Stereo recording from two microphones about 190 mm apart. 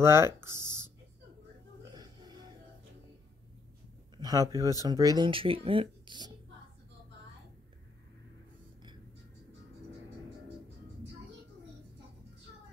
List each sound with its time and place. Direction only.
0.0 s speech: 15° right (ahead or behind)
1.9 s music: 20° right (ahead or behind)
4.2 s speech: 20° right (ahead or behind)